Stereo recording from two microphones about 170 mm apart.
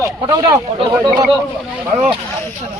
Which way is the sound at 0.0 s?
20° right (ahead or behind).